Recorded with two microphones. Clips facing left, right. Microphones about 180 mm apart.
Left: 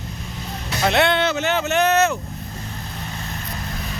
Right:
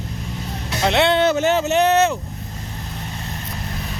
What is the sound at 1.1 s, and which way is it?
Speech, 35° right (ahead or behind).